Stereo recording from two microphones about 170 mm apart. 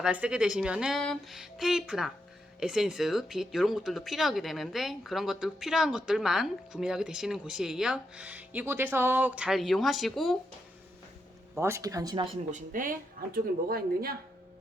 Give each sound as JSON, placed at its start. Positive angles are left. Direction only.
{"t": 0.0, "sound": "speech", "side_deg": -5}
{"t": 11.6, "sound": "speech", "side_deg": -20}
{"t": 12.5, "sound": "speech", "side_deg": -55}